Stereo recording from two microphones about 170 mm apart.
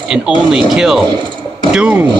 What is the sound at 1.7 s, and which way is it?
Speech, 5° right (ahead or behind).